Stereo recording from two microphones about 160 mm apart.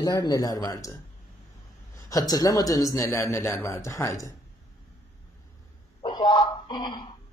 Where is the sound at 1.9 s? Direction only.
25° left (ahead or behind).